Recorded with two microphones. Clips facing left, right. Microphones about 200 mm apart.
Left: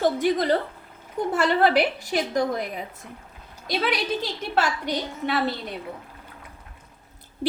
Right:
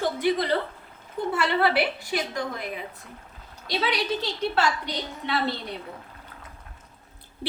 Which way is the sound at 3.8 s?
50° left (ahead or behind).